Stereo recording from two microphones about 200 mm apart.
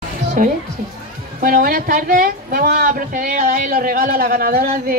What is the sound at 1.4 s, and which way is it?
A woman's voice, 45° right (ahead or behind).